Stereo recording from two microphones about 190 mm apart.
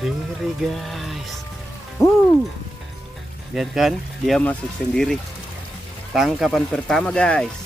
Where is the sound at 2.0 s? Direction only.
15° left (ahead or behind).